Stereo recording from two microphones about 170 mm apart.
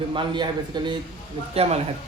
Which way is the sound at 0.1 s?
30° right (ahead or behind).